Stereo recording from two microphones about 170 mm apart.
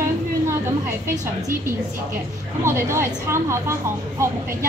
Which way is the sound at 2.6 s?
15° right (ahead or behind).